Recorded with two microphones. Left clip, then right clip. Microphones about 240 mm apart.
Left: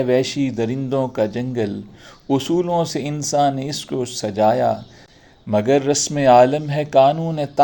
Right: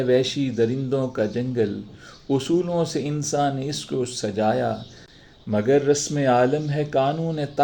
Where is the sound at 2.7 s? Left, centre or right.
Left.